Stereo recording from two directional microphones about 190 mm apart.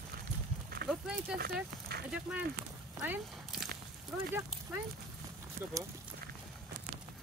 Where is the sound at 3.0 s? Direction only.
5° right (ahead or behind).